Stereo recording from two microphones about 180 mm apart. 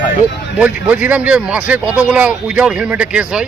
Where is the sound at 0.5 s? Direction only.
10° right (ahead or behind).